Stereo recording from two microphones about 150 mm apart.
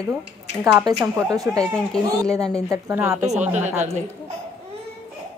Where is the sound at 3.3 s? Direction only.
50° right (ahead or behind).